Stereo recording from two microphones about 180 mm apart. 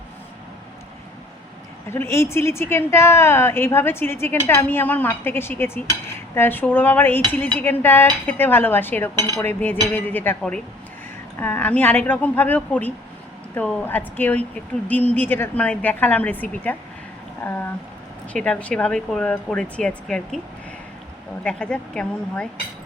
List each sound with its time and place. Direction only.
1.9 s speech: 15° left (ahead or behind)
21.4 s speech: 5° left (ahead or behind)